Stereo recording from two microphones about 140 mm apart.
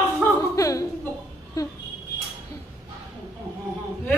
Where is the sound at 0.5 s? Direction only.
25° left (ahead or behind).